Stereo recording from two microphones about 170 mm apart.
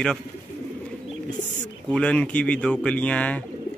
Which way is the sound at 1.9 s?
5° left (ahead or behind).